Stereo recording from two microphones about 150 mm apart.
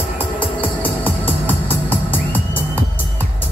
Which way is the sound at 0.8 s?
10° left (ahead or behind).